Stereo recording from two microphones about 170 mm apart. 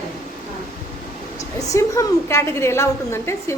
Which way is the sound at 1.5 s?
20° left (ahead or behind).